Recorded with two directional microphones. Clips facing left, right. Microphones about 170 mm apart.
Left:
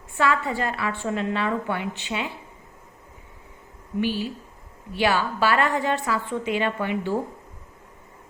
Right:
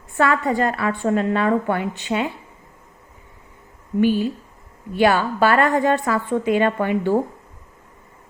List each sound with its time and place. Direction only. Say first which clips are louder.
0.2 s a woman's voice: right 5 dB; 45° right (ahead or behind)
4.0 s a woman's voice: right 8 dB; 50° right (ahead or behind)